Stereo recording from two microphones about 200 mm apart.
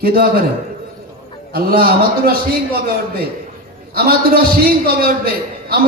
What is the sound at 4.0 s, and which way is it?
A man's voice, 50° right (ahead or behind).